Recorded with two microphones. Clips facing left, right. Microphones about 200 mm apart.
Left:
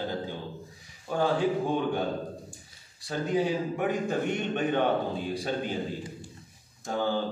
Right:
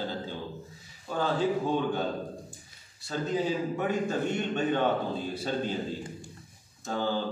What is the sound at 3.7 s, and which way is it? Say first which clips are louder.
A man's voice: left 1 dB; 15° left (ahead or behind).